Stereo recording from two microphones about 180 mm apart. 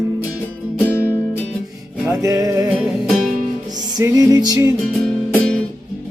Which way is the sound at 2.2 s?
20° right (ahead or behind).